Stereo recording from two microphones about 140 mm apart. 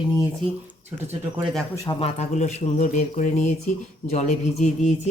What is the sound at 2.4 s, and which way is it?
Speech, 55° left (ahead or behind).